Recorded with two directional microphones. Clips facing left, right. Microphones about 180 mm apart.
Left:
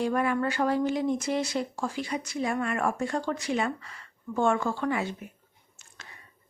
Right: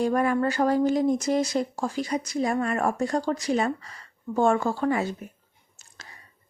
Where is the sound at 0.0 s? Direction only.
40° right (ahead or behind).